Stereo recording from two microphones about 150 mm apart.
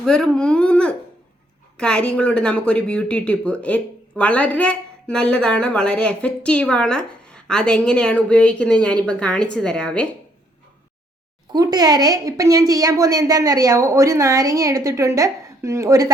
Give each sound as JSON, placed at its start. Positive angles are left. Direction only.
{"t": 0.0, "sound": "speech", "side_deg": 5}
{"t": 11.5, "sound": "a woman's voice", "side_deg": -25}